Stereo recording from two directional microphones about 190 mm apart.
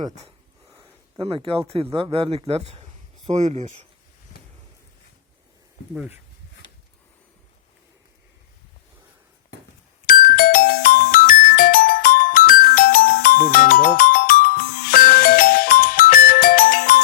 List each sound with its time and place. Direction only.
0.0 s speech: 35° right (ahead or behind)
5.9 s speech: 10° right (ahead or behind)
10.1 s music: 50° left (ahead or behind)